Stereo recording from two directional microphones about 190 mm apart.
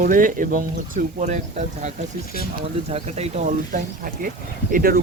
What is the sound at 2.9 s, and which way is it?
Speech, 35° right (ahead or behind).